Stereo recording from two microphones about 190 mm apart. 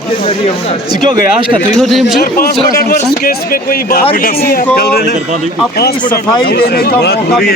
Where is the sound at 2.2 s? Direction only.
55° left (ahead or behind).